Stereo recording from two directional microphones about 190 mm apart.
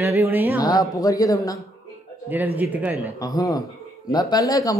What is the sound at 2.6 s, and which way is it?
Speech, 10° right (ahead or behind).